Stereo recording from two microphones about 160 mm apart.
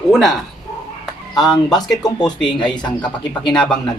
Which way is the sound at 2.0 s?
25° left (ahead or behind).